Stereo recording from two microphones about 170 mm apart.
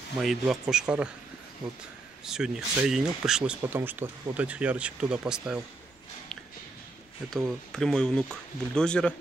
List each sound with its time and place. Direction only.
0.2 s speech: centre (ahead or behind)
2.2 s speech: 5° right (ahead or behind)
7.2 s speech: centre (ahead or behind)